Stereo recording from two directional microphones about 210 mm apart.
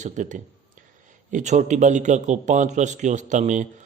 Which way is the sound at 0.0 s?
35° right (ahead or behind).